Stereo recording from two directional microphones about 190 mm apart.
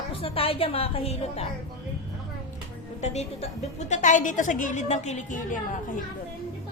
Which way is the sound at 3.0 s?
35° left (ahead or behind).